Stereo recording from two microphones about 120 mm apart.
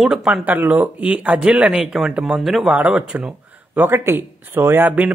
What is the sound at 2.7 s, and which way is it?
Speech, 10° right (ahead or behind).